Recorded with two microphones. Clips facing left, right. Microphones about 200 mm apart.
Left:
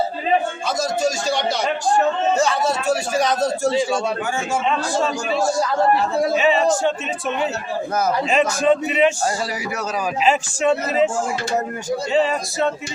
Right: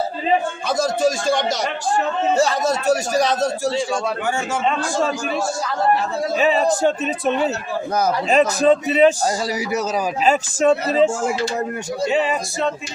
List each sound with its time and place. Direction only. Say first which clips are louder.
0.8 s speech: right 3 dB; 55° right (ahead or behind)
2.3 s speech: right 1 dB; 35° right (ahead or behind)
6.3 s speech: right 2 dB; 40° right (ahead or behind)
10.2 s speech: right 2 dB; 40° right (ahead or behind)
12.3 s speech: left 1 dB; centre (ahead or behind)